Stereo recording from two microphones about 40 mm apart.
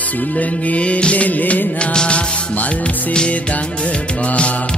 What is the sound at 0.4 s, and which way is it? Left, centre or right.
Music, left.